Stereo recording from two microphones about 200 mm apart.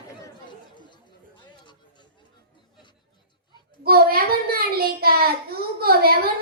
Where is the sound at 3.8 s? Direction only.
50° right (ahead or behind).